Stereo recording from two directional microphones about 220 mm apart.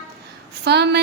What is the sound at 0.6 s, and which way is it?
Speech, 50° right (ahead or behind).